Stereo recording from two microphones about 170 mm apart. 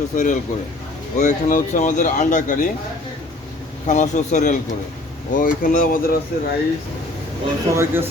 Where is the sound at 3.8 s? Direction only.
45° left (ahead or behind).